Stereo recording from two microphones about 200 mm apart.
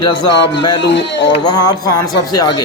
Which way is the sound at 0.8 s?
60° left (ahead or behind).